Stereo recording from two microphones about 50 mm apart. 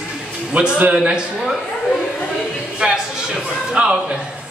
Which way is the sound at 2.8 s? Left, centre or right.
Centre.